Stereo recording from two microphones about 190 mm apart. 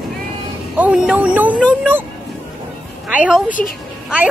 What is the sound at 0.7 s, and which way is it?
Speech, 5° right (ahead or behind).